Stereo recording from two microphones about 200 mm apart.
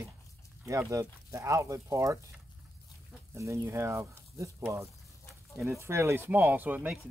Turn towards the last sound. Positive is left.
turn(degrees=-10)  # may be behind; listen again after turning